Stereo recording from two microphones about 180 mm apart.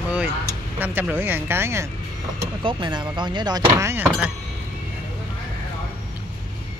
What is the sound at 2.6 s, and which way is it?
Speech, 25° right (ahead or behind).